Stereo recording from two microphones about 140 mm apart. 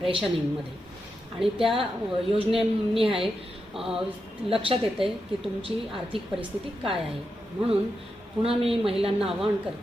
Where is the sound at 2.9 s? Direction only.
40° right (ahead or behind).